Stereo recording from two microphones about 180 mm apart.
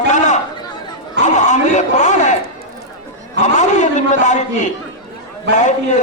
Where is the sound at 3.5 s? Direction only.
40° left (ahead or behind).